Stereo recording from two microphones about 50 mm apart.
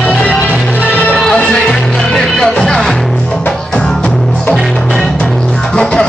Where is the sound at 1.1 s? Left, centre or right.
Centre.